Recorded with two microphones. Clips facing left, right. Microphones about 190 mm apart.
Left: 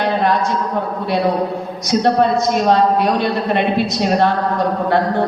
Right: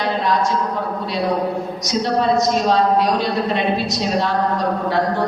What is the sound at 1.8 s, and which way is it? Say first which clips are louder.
A woman's voice: left 6 dB; 55° left (ahead or behind).